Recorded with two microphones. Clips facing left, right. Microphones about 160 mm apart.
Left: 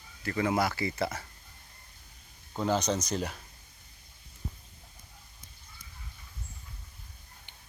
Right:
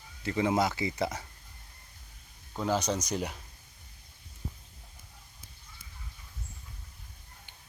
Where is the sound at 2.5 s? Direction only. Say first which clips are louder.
Left 1 dB; 5° right (ahead or behind).